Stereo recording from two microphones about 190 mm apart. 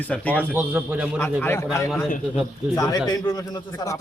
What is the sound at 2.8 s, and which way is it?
Speech, 20° left (ahead or behind).